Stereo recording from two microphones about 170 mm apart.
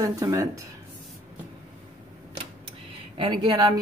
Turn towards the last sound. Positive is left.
turn(degrees=-25)  # may be behind; listen again after turning